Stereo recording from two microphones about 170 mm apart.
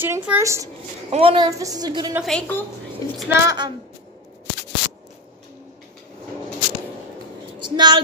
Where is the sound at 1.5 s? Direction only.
20° right (ahead or behind).